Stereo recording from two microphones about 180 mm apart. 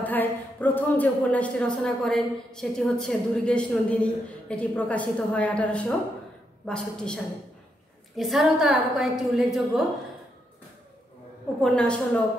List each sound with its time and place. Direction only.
0.0 s a woman's voice: 10° left (ahead or behind)
11.6 s a woman's voice: 5° left (ahead or behind)